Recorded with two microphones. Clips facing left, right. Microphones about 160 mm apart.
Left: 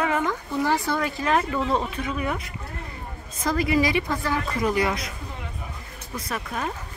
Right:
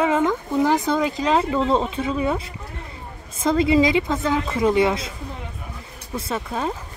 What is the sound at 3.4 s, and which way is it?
A woman's voice, 25° right (ahead or behind).